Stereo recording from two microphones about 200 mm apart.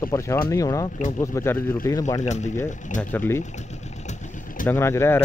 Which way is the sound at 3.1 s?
10° left (ahead or behind).